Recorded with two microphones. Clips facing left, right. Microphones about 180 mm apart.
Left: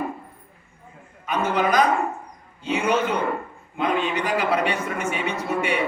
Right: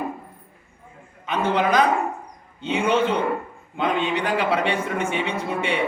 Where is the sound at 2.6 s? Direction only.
30° right (ahead or behind).